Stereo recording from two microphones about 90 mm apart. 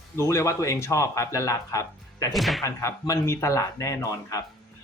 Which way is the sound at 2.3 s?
Centre (ahead or behind).